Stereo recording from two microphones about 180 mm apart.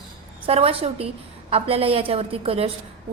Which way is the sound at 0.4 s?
30° right (ahead or behind).